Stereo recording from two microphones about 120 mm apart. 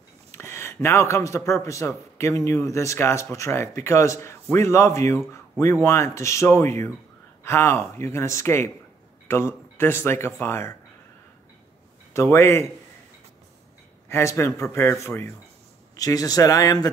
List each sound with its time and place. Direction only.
0.3 s a man's voice: 20° left (ahead or behind)
12.1 s a man's voice: 20° left (ahead or behind)
14.0 s a man's voice: 20° left (ahead or behind)